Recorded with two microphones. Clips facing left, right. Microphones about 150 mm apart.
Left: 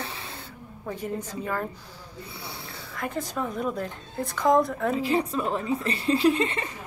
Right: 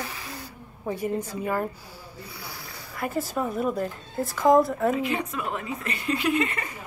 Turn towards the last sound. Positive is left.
turn(degrees=30)  # may be behind; listen again after turning